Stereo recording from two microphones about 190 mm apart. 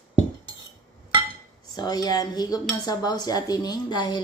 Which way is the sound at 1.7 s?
20° left (ahead or behind).